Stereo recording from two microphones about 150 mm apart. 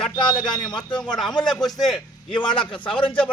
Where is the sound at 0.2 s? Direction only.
30° left (ahead or behind).